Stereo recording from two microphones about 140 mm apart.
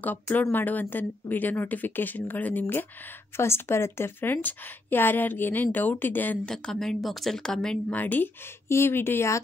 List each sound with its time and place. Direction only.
0.0 s a woman's voice: 10° left (ahead or behind)